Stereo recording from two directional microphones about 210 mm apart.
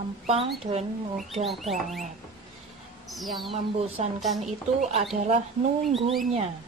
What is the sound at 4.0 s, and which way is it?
Speech, 30° right (ahead or behind).